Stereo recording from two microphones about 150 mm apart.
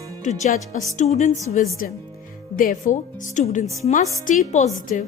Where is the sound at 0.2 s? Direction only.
50° left (ahead or behind).